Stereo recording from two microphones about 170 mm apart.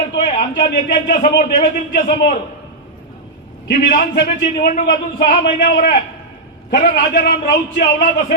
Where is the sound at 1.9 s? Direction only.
60° left (ahead or behind).